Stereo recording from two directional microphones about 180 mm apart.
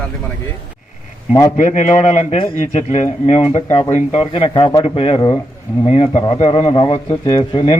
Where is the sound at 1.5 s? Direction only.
45° left (ahead or behind).